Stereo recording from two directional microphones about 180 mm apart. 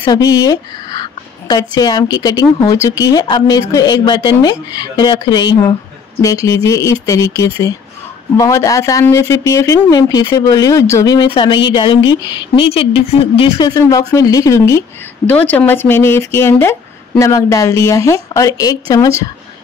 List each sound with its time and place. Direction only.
0.0 s a woman's voice: 20° left (ahead or behind)